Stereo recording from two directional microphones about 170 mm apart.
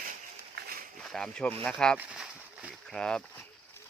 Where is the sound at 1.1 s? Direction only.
5° left (ahead or behind).